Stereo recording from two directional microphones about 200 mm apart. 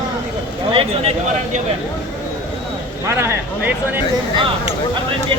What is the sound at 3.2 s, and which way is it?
Speech, 10° right (ahead or behind).